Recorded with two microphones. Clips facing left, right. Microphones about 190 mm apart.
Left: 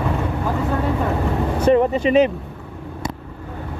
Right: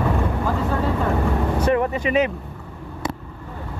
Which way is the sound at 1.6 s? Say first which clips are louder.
Left 7 dB; 25° left (ahead or behind).